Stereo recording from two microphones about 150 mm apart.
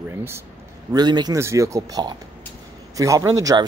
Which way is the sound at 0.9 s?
30° right (ahead or behind).